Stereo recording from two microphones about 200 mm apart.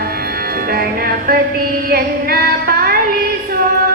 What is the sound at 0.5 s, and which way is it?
Music, 50° right (ahead or behind).